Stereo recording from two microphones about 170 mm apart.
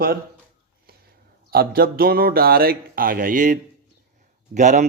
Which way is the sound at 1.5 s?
65° right (ahead or behind).